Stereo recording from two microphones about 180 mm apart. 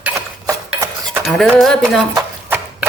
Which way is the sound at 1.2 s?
Centre (ahead or behind).